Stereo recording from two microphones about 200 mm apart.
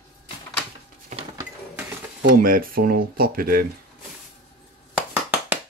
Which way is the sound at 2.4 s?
45° right (ahead or behind).